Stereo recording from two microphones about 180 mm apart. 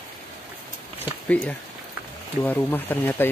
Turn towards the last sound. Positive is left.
turn(degrees=10)  # may be behind; listen again after turning